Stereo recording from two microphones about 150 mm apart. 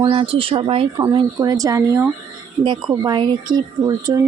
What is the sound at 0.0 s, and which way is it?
Speech, 35° right (ahead or behind).